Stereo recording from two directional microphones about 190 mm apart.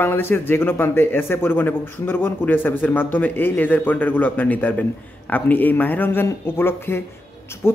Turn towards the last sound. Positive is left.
turn(degrees=15)  # may be behind; listen again after turning